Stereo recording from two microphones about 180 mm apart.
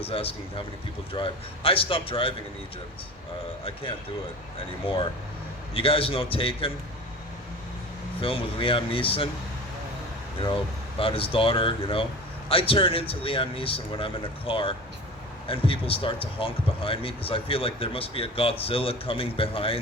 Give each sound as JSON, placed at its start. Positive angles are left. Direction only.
{"t": 0.0, "sound": "speech", "side_deg": 30}
{"t": 5.7, "sound": "speech", "side_deg": 30}
{"t": 8.2, "sound": "speech", "side_deg": 30}
{"t": 10.4, "sound": "speech", "side_deg": 30}